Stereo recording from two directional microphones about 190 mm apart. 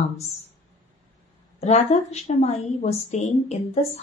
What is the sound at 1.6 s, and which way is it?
A woman's voice, 35° left (ahead or behind).